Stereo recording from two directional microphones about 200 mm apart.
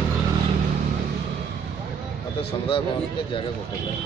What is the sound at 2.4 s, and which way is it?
Speech, 25° left (ahead or behind).